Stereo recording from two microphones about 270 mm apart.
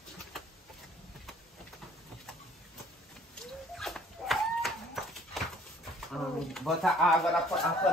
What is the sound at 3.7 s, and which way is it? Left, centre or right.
Horse, centre.